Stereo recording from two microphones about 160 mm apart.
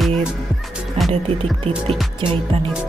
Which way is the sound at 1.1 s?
40° right (ahead or behind).